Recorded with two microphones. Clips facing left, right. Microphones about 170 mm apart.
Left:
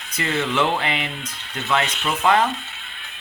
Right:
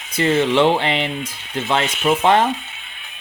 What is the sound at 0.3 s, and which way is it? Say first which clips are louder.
Speech: right 5 dB; 30° right (ahead or behind).